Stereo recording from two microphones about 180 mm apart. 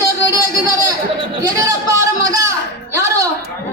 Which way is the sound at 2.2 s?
20° right (ahead or behind).